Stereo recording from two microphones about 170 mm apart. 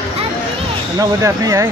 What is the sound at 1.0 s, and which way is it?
Speech, 20° right (ahead or behind).